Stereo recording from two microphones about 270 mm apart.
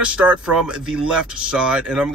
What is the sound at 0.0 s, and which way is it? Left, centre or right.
Speech, centre.